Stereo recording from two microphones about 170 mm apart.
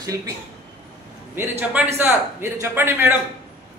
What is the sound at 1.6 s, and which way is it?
A man's voice, 10° right (ahead or behind).